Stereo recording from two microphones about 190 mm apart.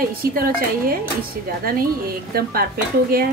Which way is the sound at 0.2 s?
50° right (ahead or behind).